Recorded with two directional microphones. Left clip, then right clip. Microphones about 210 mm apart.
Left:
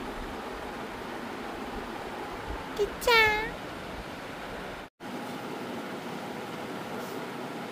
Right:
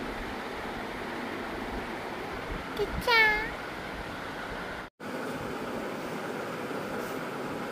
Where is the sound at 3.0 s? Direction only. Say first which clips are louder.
Left 1 dB; 30° left (ahead or behind).